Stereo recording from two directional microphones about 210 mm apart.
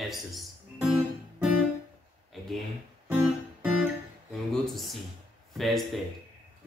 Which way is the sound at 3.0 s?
5° right (ahead or behind).